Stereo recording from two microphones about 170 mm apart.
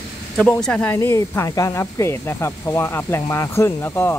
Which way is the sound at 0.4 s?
5° left (ahead or behind).